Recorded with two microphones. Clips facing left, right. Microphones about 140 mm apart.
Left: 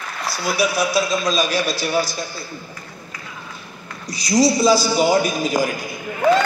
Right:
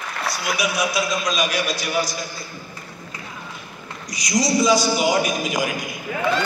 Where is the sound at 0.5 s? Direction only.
30° left (ahead or behind).